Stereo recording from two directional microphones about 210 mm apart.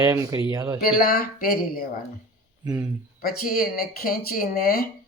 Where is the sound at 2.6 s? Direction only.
15° right (ahead or behind).